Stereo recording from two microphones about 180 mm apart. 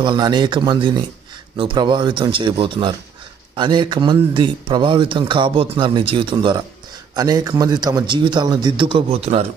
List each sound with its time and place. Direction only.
0.0 s speech: 25° right (ahead or behind)